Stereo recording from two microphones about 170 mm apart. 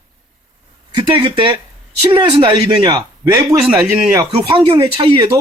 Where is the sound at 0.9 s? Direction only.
30° right (ahead or behind).